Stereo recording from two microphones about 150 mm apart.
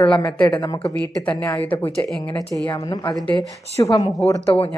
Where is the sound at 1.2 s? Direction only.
10° left (ahead or behind).